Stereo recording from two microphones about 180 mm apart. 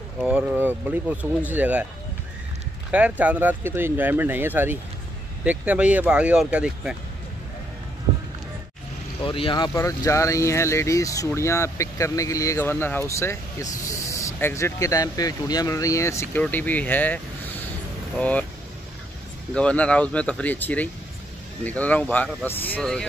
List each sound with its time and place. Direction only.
0.3 s speech: 5° right (ahead or behind)
2.9 s speech: 5° right (ahead or behind)
9.2 s speech: 30° left (ahead or behind)
9.8 s speech: 15° left (ahead or behind)
19.5 s speech: 5° left (ahead or behind)